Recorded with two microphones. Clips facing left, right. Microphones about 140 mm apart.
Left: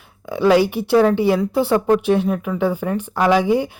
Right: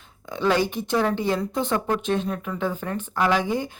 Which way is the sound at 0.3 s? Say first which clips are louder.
Left 7 dB; 10° left (ahead or behind).